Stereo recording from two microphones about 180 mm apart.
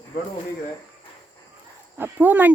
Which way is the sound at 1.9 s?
10° right (ahead or behind).